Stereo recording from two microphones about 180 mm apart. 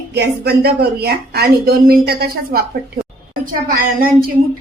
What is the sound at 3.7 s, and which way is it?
Speech, 55° right (ahead or behind).